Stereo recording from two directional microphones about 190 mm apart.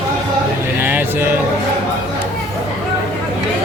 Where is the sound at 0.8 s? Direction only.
10° right (ahead or behind).